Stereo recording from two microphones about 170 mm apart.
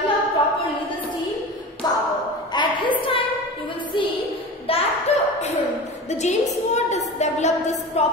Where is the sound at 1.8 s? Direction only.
25° left (ahead or behind).